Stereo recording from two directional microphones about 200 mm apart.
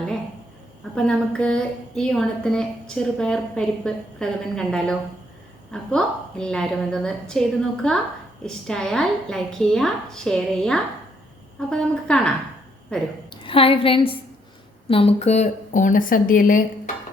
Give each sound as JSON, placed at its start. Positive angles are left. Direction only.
{"t": 0.9, "sound": "a woman's voice", "side_deg": 5}
{"t": 13.3, "sound": "a woman's voice", "side_deg": 25}